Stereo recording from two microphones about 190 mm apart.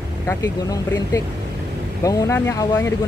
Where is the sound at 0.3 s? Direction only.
20° left (ahead or behind).